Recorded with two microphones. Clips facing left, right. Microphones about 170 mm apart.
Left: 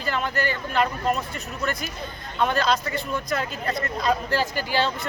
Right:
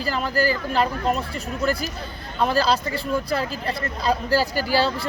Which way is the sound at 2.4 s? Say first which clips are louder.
Right 2 dB; 30° right (ahead or behind).